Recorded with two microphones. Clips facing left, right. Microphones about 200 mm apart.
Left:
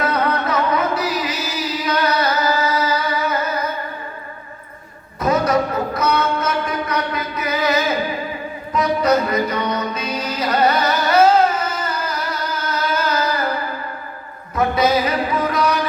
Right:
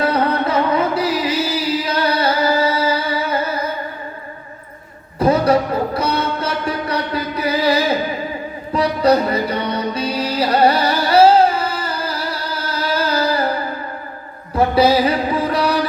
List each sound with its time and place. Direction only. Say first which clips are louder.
0.0 s music: right 3 dB; 30° right (ahead or behind)
5.2 s music: right 3 dB; 30° right (ahead or behind)
14.5 s music: right 3 dB; 30° right (ahead or behind)